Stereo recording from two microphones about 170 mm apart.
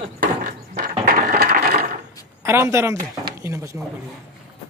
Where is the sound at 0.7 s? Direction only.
55° right (ahead or behind); by 1.7 s 70° right (ahead or behind).